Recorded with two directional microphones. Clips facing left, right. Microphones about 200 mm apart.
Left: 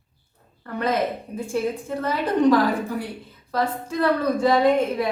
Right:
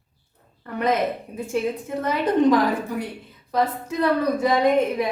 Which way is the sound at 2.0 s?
20° right (ahead or behind).